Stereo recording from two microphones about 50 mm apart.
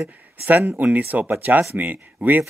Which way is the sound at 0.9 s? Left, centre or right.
Right.